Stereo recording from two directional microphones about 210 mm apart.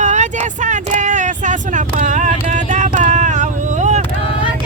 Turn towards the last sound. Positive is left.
turn(degrees=-35)  # may be behind; listen again after turning